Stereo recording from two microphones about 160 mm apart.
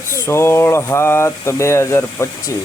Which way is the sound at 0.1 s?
15° left (ahead or behind).